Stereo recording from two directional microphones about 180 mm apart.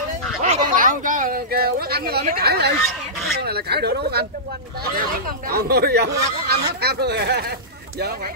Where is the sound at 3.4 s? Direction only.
65° right (ahead or behind).